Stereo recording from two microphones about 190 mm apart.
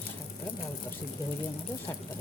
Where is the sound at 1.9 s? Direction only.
10° left (ahead or behind).